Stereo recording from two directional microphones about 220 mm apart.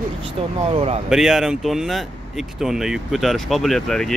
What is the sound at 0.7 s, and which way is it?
Speech, 25° right (ahead or behind).